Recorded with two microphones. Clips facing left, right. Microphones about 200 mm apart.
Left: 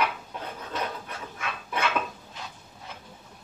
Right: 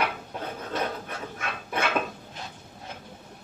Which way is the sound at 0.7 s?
45° right (ahead or behind).